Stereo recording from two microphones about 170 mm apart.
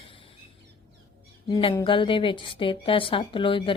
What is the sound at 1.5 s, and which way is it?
Speech, 30° left (ahead or behind).